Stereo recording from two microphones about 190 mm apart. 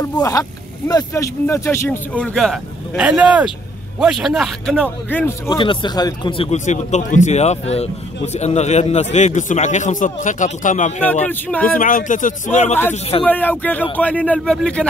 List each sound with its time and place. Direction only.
0.0 s a man's voice: 20° left (ahead or behind)
5.6 s a man's voice: 25° left (ahead or behind); by 10.9 s 40° left (ahead or behind)
11.2 s speech: 10° left (ahead or behind)
11.6 s speech: 45° left (ahead or behind)
13.2 s speech: 10° left (ahead or behind)